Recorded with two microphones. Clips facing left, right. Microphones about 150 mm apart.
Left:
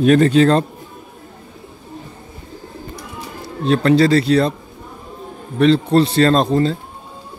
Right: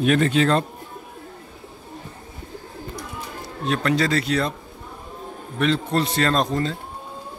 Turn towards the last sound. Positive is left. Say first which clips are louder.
# left 7 dB
turn(degrees=30)  # may be behind; listen again after turning